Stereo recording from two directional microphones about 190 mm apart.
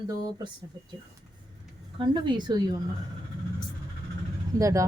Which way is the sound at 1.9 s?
25° right (ahead or behind).